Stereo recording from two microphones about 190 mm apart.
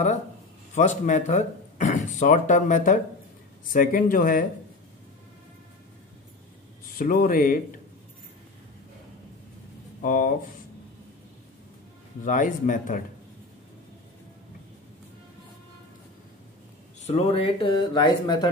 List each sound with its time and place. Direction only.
0.7 s speech: 40° left (ahead or behind)
6.9 s speech: 50° left (ahead or behind)
10.0 s speech: 45° left (ahead or behind)
12.3 s speech: 45° left (ahead or behind)
17.0 s speech: 35° left (ahead or behind)